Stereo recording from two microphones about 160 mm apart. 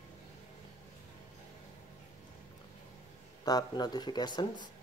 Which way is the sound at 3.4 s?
25° left (ahead or behind).